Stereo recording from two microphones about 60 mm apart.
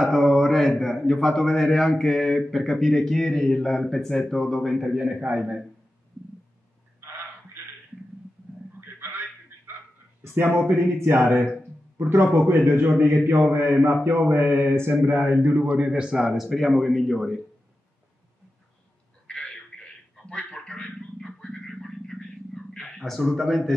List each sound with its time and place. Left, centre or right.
0.0 s a man's voice: centre
4.9 s a man's voice: right
10.2 s a man's voice: right; by 17.4 s centre
19.2 s a sound: centre